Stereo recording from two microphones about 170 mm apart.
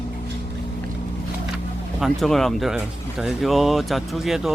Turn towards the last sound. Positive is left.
turn(degrees=0)  # may be behind; listen again after turning